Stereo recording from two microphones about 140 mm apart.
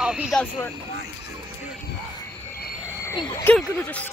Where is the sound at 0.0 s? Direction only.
5° right (ahead or behind).